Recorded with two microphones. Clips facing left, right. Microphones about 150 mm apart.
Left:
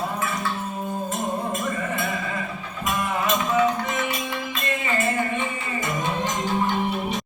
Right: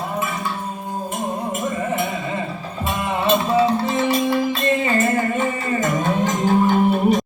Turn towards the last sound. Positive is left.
turn(degrees=-45)  # may be behind; listen again after turning